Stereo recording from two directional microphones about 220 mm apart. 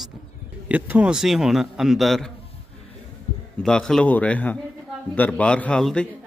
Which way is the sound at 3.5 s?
5° left (ahead or behind).